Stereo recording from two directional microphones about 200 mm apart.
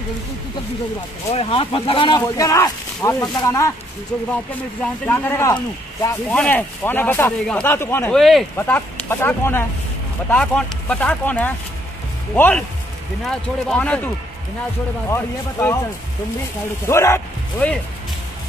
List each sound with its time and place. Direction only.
1.3 s speech: 30° left (ahead or behind)
4.1 s speech: 5° left (ahead or behind)
16.8 s speech: 15° left (ahead or behind)